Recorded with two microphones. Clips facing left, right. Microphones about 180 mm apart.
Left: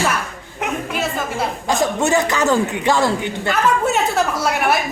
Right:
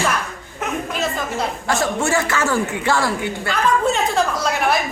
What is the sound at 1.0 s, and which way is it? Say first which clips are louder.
Speech: left 1 dB; 15° left (ahead or behind).